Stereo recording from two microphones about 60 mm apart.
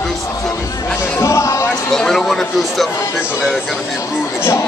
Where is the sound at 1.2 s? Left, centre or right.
Left.